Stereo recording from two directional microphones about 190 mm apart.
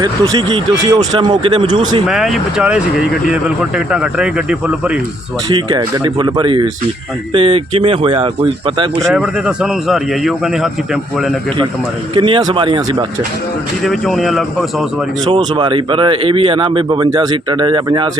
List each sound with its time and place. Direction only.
0.0 s speech: 20° right (ahead or behind)
2.0 s speech: centre (ahead or behind)
5.5 s speech: 25° right (ahead or behind)
9.1 s speech: 5° right (ahead or behind)
12.1 s speech: 25° right (ahead or behind)
13.8 s speech: centre (ahead or behind)
15.3 s speech: 25° right (ahead or behind)